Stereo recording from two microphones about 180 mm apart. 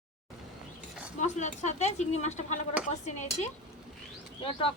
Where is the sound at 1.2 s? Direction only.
40° left (ahead or behind).